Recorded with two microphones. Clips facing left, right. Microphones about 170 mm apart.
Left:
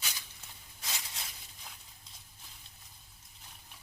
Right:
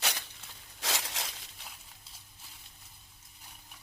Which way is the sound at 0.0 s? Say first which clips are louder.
Right 9 dB; 70° right (ahead or behind).